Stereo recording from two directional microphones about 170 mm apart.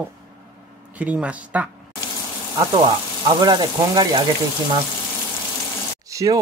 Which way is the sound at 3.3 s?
25° right (ahead or behind).